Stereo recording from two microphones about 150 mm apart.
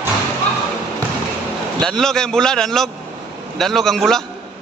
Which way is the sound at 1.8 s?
5° left (ahead or behind).